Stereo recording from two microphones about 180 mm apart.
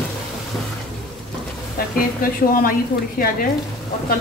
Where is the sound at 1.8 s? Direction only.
55° left (ahead or behind).